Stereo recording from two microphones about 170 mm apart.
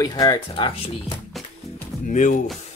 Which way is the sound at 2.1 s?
45° left (ahead or behind).